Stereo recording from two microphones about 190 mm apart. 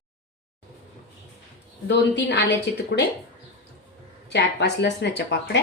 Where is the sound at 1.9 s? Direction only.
65° left (ahead or behind).